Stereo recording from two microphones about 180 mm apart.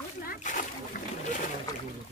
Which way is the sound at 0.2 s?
50° left (ahead or behind).